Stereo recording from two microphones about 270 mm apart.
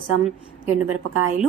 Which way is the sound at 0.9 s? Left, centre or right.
Right.